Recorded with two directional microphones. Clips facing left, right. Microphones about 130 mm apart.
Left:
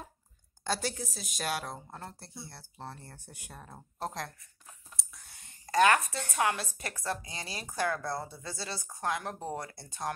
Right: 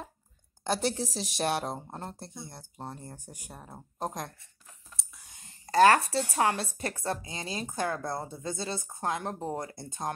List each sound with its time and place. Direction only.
0.7 s speech: 25° right (ahead or behind)
5.0 s clicking: centre (ahead or behind)
5.4 s speech: 30° right (ahead or behind)